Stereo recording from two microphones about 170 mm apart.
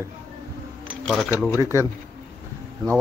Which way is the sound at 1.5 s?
15° right (ahead or behind).